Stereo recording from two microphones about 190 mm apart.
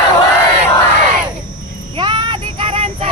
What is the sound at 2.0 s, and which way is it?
Child singing, 25° right (ahead or behind).